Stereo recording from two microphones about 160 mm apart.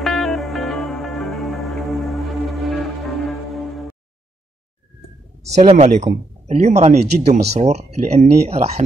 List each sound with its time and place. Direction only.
0.0 s music: centre (ahead or behind)
5.5 s speech: 45° right (ahead or behind)